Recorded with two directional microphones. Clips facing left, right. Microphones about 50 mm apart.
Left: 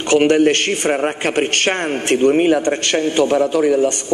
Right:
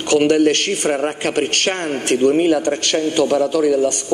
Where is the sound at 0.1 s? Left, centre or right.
Left.